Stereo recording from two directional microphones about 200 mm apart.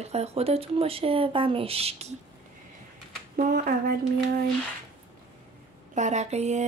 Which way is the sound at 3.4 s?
45° right (ahead or behind).